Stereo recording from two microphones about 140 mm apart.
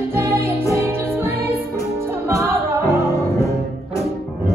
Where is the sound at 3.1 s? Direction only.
25° left (ahead or behind).